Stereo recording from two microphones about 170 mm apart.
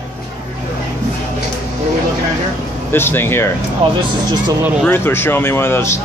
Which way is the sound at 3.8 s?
35° right (ahead or behind).